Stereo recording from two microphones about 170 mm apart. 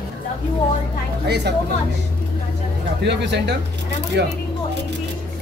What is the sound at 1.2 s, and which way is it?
Speech, 75° right (ahead or behind).